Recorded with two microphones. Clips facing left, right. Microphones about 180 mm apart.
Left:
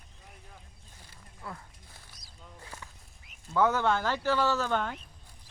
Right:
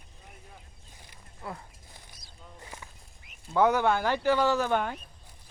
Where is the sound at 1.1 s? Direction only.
25° right (ahead or behind).